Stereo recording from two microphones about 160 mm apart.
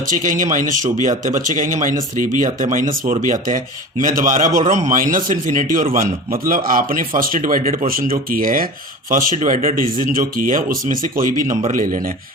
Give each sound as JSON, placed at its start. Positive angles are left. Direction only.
{"t": 0.3, "sound": "a man's voice", "side_deg": -55}